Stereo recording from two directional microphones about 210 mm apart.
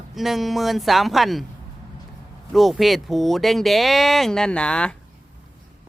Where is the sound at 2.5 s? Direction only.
Centre (ahead or behind).